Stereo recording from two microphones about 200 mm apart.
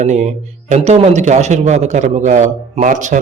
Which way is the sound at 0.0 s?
35° right (ahead or behind).